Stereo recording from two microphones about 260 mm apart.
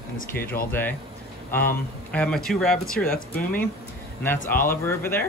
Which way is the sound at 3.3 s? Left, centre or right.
Left.